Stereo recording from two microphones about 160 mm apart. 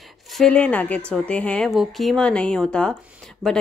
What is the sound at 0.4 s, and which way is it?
Speech, 5° left (ahead or behind).